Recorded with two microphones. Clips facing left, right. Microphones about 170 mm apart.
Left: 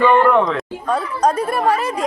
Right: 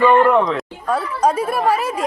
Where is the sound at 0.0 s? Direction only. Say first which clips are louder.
Even; centre (ahead or behind).